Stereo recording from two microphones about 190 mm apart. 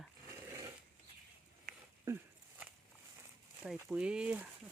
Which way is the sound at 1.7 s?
50° right (ahead or behind).